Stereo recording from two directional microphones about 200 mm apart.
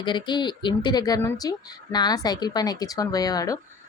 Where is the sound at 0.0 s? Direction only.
25° left (ahead or behind).